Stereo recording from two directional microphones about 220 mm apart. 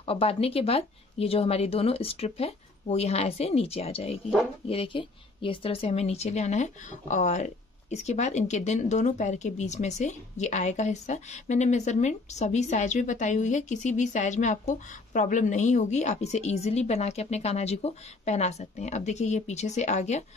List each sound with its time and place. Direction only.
0.0 s speech: 25° left (ahead or behind)